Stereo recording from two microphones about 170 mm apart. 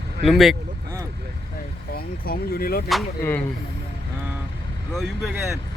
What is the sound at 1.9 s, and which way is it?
Speech, 60° left (ahead or behind).